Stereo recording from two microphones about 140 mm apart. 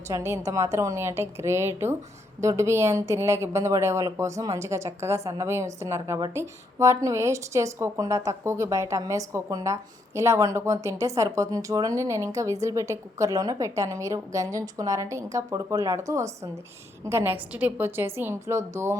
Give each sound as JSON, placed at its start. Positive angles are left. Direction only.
{"t": 0.1, "sound": "a woman's voice", "side_deg": -20}